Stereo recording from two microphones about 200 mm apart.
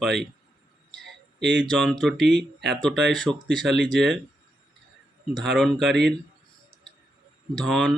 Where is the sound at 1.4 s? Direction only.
60° right (ahead or behind).